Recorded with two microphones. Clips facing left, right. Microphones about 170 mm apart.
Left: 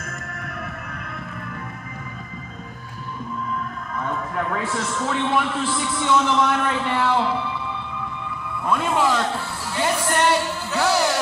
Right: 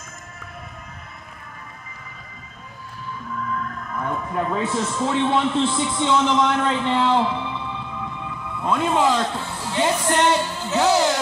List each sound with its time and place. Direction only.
4.0 s a man's voice: 15° right (ahead or behind)
8.6 s a man's voice: 20° right (ahead or behind)
9.7 s a sound: 20° right (ahead or behind)